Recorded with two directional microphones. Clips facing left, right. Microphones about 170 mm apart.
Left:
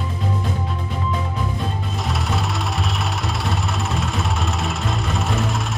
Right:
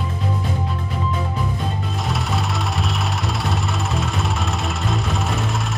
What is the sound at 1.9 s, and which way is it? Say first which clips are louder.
Music: even; centre (ahead or behind).